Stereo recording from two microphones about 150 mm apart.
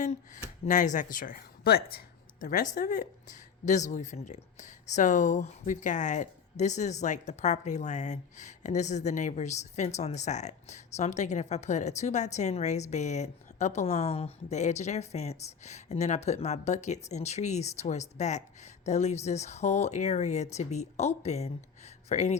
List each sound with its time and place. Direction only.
0.6 s a woman's voice: 55° left (ahead or behind)